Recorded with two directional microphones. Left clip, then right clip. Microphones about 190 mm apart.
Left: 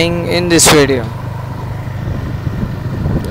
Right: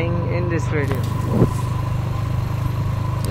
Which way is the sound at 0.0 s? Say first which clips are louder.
Left 10 dB; 60° left (ahead or behind).